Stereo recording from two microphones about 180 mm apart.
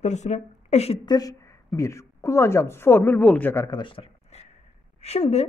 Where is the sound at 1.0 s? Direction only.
20° left (ahead or behind).